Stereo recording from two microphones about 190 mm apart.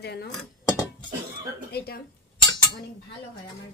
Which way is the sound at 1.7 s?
55° left (ahead or behind).